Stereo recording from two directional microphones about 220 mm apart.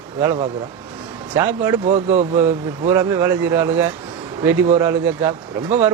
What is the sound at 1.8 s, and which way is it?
Speech, 30° right (ahead or behind).